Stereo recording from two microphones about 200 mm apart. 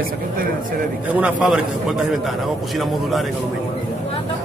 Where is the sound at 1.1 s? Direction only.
5° right (ahead or behind).